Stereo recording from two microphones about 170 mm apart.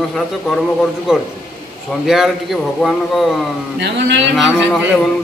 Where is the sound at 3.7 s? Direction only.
90° right.